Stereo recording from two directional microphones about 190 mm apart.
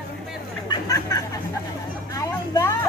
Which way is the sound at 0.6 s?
20° left (ahead or behind).